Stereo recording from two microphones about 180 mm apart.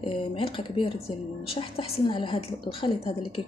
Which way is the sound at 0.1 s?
30° left (ahead or behind).